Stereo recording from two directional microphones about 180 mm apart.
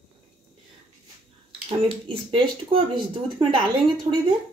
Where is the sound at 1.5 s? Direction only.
30° right (ahead or behind).